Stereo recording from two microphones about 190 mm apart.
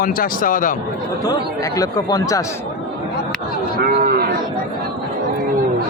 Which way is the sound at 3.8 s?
50° right (ahead or behind).